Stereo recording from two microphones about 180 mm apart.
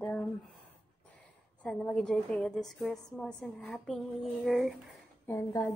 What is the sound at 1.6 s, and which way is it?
A woman's voice, 5° left (ahead or behind).